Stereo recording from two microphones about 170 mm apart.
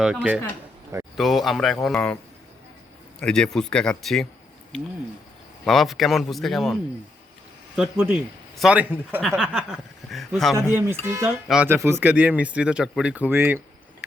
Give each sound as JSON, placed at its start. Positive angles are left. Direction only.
{"t": 0.0, "sound": "speech", "side_deg": -5}
{"t": 3.2, "sound": "speech", "side_deg": 5}
{"t": 5.6, "sound": "speech", "side_deg": 0}
{"t": 7.8, "sound": "speech", "side_deg": -5}
{"t": 10.7, "sound": "speech", "side_deg": -10}
{"t": 11.4, "sound": "speech", "side_deg": -5}
{"t": 11.7, "sound": "speech", "side_deg": -15}